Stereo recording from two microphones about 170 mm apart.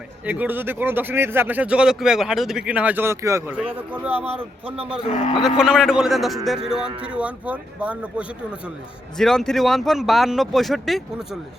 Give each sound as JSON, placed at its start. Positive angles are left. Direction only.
{"t": 0.3, "sound": "speech", "side_deg": -10}
{"t": 5.0, "sound": "speech", "side_deg": 35}
{"t": 5.4, "sound": "a man's voice", "side_deg": -5}
{"t": 9.1, "sound": "a man's voice", "side_deg": 5}